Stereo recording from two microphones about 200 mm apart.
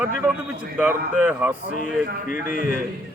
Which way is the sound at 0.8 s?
10° right (ahead or behind).